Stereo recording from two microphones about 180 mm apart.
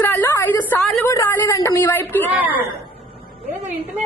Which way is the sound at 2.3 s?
10° right (ahead or behind).